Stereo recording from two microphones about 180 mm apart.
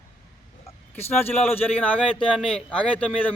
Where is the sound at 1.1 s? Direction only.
10° left (ahead or behind).